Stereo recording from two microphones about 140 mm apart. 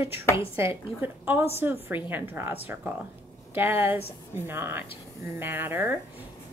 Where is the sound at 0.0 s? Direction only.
15° right (ahead or behind).